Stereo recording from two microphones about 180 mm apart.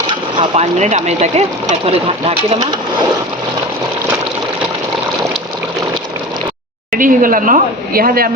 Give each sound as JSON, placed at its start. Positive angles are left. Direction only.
{"t": 0.1, "sound": "speech", "side_deg": -30}
{"t": 6.9, "sound": "speech", "side_deg": -50}